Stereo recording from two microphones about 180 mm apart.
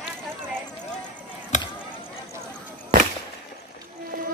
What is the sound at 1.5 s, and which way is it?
Chop, 40° left (ahead or behind).